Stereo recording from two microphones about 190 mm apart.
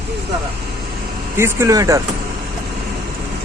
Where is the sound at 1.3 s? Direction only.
15° right (ahead or behind).